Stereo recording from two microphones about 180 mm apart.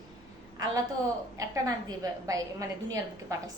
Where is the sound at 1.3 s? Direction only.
20° right (ahead or behind).